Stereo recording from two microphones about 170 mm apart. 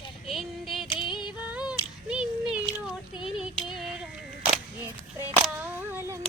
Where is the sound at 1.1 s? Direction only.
25° left (ahead or behind).